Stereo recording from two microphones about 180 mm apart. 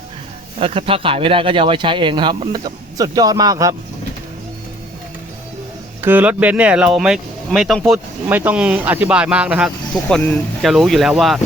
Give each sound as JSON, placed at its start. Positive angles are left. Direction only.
{"t": 0.6, "sound": "speech", "side_deg": -30}
{"t": 6.0, "sound": "speech", "side_deg": -10}